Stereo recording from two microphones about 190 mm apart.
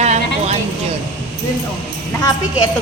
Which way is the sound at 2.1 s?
20° left (ahead or behind).